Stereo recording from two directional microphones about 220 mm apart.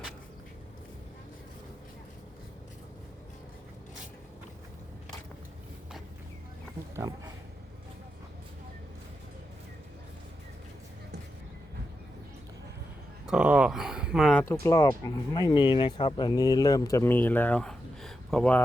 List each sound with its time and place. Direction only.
6.9 s a sound: 15° right (ahead or behind)
13.2 s speech: 5° right (ahead or behind)
14.6 s speech: 15° left (ahead or behind)